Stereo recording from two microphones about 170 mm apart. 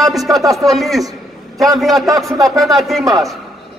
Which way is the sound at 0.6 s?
Centre (ahead or behind).